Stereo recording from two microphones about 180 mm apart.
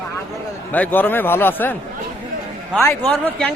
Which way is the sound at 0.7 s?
10° left (ahead or behind).